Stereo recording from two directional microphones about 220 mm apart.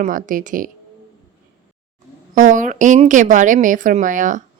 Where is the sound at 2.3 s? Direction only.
35° right (ahead or behind).